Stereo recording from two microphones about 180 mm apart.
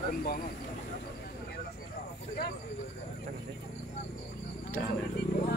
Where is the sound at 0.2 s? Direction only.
55° left (ahead or behind).